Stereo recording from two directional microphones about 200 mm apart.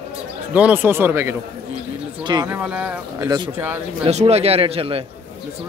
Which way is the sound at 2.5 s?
5° right (ahead or behind).